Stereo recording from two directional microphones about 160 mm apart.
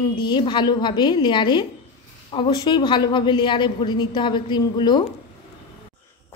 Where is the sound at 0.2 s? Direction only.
30° left (ahead or behind).